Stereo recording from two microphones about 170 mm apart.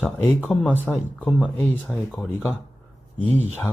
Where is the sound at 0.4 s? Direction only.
Centre (ahead or behind).